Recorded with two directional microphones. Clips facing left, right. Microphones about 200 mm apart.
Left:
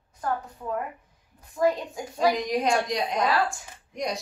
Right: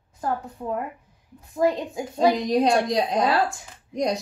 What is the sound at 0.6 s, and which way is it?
A woman's voice, 30° right (ahead or behind).